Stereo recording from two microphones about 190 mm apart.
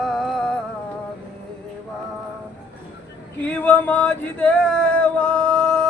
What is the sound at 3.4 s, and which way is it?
Male singing, 10° left (ahead or behind).